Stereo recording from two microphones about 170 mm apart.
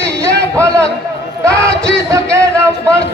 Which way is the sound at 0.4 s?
15° right (ahead or behind).